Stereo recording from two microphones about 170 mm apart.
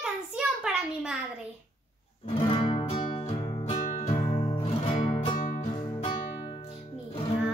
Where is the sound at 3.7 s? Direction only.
45° left (ahead or behind).